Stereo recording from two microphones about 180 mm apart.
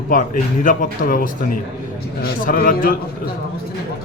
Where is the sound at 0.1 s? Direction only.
50° left (ahead or behind).